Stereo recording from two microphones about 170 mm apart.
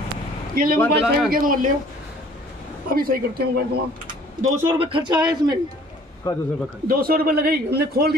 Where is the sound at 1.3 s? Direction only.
55° right (ahead or behind).